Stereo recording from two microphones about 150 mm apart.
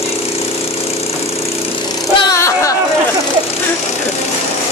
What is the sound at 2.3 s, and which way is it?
Speech, 20° left (ahead or behind).